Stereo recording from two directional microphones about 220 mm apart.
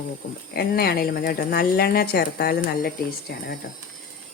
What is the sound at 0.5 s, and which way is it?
Speech, 45° left (ahead or behind).